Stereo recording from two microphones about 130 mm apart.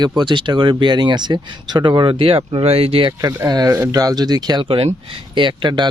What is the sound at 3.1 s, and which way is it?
Speech, 25° right (ahead or behind).